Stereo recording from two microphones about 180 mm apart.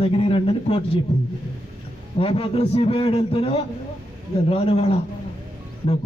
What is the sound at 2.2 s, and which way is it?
A man's voice, 30° left (ahead or behind).